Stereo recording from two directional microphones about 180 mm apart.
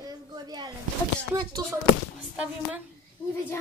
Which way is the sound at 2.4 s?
5° right (ahead or behind).